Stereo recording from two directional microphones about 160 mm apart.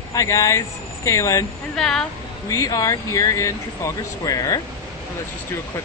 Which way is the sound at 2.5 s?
20° left (ahead or behind).